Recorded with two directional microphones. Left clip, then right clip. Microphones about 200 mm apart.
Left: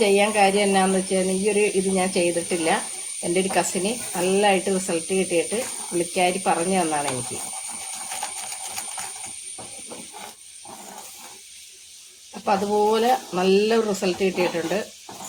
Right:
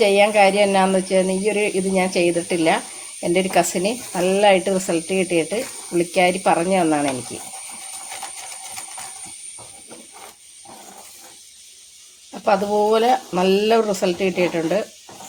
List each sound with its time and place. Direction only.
0.0 s speech: 45° right (ahead or behind)
12.5 s speech: 40° right (ahead or behind)